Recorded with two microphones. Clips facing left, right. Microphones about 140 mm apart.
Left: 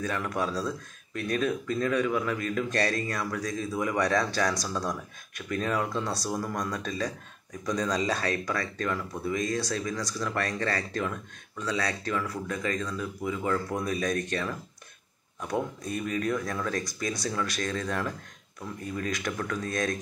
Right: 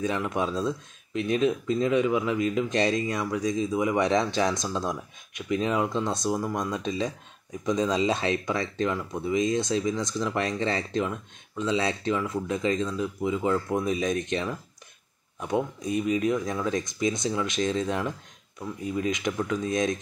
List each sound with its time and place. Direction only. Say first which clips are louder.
0.0 s speech: right 3 dB; 20° right (ahead or behind)